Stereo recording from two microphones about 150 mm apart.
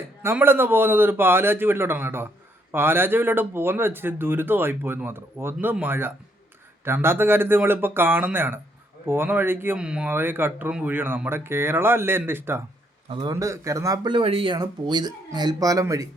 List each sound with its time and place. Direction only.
0.2 s speech: 15° right (ahead or behind)
13.1 s a man's voice: 30° right (ahead or behind)
13.3 s speech: 20° right (ahead or behind)